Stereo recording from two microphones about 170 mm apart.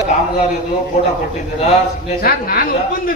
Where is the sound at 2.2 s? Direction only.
60° left (ahead or behind).